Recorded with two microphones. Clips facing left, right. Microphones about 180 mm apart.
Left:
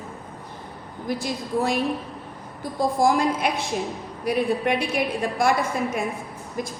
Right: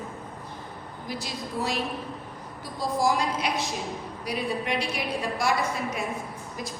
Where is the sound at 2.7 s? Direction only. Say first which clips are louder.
Left 5 dB; 50° left (ahead or behind).